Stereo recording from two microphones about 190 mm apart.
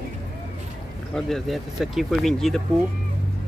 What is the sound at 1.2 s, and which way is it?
Speech, centre (ahead or behind).